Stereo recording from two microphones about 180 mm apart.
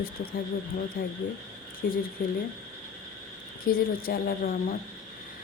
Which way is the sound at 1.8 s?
60° left (ahead or behind).